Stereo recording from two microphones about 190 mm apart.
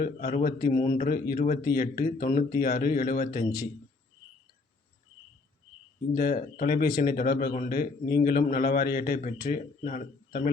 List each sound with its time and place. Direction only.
0.0 s a man's voice: 45° left (ahead or behind)
6.1 s a man's voice: 50° left (ahead or behind)